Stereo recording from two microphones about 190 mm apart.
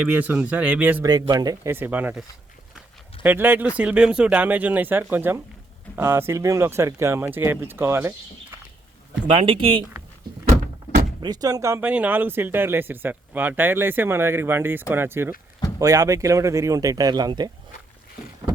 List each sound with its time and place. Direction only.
0.0 s speech: 10° right (ahead or behind)
1.2 s speech: 20° right (ahead or behind)
3.2 s speech: 10° right (ahead or behind)
9.2 s speech: 30° right (ahead or behind)
11.2 s speech: 20° right (ahead or behind)